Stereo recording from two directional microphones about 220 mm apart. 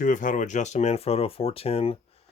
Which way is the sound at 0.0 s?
35° left (ahead or behind).